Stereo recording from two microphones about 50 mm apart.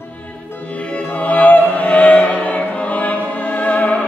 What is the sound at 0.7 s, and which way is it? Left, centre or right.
Music, left.